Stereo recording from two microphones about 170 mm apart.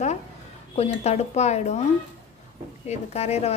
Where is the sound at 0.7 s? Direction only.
40° left (ahead or behind).